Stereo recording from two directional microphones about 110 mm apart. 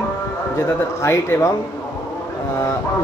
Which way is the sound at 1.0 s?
25° left (ahead or behind).